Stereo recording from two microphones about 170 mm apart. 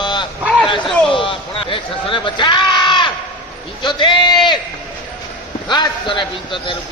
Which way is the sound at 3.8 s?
30° left (ahead or behind).